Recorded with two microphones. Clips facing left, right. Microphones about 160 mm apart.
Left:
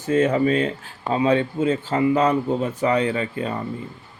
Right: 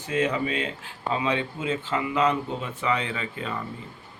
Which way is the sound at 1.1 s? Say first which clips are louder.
Left 8 dB; 40° left (ahead or behind).